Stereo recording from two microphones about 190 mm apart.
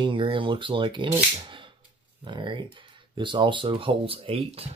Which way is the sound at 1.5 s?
25° right (ahead or behind).